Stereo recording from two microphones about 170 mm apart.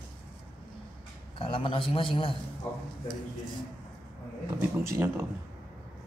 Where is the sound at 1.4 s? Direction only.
30° left (ahead or behind).